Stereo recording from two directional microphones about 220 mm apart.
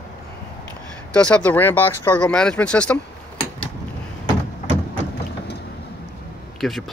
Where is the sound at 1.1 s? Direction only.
5° left (ahead or behind).